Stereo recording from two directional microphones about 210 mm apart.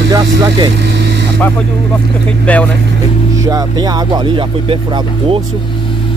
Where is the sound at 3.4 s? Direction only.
15° right (ahead or behind).